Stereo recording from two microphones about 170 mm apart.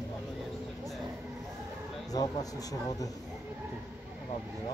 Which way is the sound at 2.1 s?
20° left (ahead or behind).